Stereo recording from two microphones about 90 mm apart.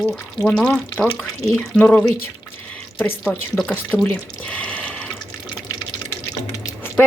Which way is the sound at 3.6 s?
10° left (ahead or behind).